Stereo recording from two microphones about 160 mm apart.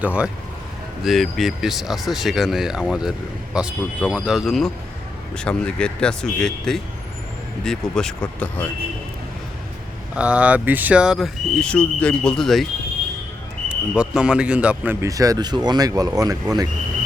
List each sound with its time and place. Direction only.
0.0 s a man's voice: 10° right (ahead or behind); by 8.7 s 10° left (ahead or behind)
10.2 s speech: 5° right (ahead or behind)
13.7 s a man's voice: 5° right (ahead or behind)
15.0 s speech: 20° right (ahead or behind)